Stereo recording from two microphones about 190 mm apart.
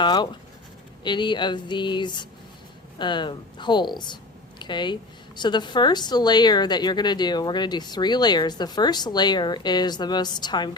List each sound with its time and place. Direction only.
0.0 s a woman's voice: 25° left (ahead or behind)